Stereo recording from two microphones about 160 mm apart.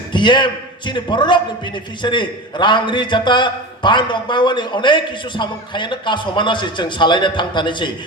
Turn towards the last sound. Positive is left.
turn(degrees=30)  # may be behind; listen again after turning